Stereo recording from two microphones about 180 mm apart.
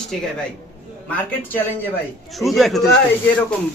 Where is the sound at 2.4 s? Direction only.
Centre (ahead or behind).